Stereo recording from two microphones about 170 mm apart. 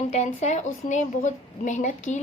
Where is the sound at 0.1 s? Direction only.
40° left (ahead or behind).